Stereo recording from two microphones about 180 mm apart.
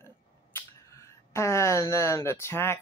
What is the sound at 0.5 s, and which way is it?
Speech, 15° left (ahead or behind).